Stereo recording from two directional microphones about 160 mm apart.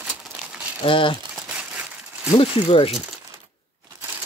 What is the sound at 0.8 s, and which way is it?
Speech, 35° left (ahead or behind).